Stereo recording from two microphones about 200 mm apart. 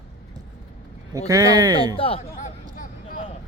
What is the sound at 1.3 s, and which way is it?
Speech, 20° right (ahead or behind).